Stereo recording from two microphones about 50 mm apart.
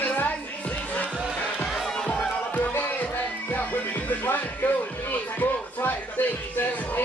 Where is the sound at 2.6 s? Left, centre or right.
Left.